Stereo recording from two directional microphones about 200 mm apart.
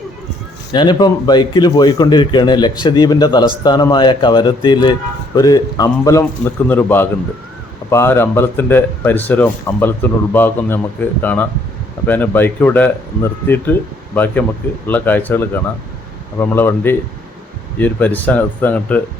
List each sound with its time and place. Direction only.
0.7 s speech: 20° left (ahead or behind)
14.8 s speech: 10° left (ahead or behind)